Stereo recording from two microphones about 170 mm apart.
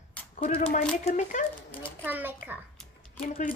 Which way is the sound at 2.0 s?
10° right (ahead or behind).